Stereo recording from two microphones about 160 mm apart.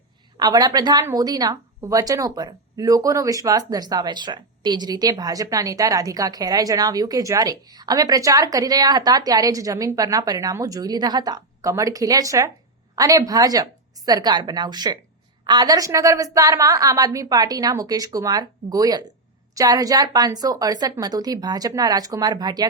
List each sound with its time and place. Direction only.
0.3 s speech: 25° right (ahead or behind)